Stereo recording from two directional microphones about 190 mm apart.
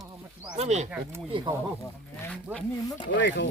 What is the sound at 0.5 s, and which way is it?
Speech, 35° right (ahead or behind).